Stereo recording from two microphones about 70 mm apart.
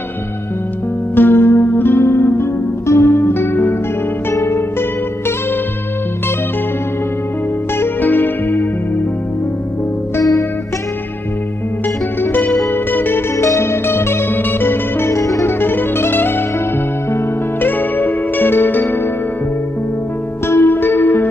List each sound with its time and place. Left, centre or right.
1.1 s music: left
8.0 s music: left
12.2 s music: left
13.4 s music: left
15.4 s music: left
20.4 s music: left